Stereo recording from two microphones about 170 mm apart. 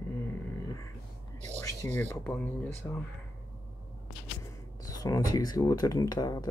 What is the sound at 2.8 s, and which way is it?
Speech, 20° left (ahead or behind).